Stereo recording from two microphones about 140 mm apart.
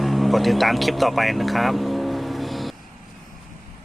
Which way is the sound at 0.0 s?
Centre (ahead or behind).